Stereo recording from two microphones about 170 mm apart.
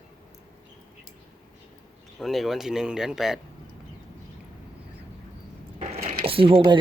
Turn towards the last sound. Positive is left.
turn(degrees=-30)  # may be behind; listen again after turning